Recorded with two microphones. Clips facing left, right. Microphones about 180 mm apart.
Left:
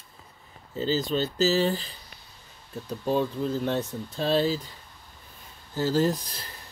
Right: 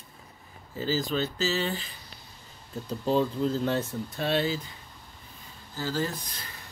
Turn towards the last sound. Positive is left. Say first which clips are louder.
# left 7 dB
turn(degrees=45)  # may be behind; listen again after turning